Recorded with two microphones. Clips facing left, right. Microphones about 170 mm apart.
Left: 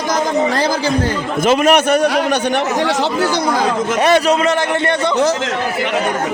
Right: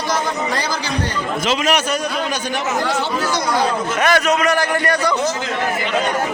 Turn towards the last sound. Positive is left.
turn(degrees=25)  # may be behind; listen again after turning